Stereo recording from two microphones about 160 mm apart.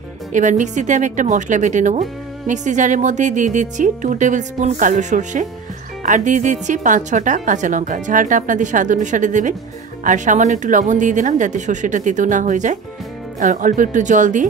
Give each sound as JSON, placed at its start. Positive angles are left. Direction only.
{"t": 0.3, "sound": "a woman's voice", "side_deg": -50}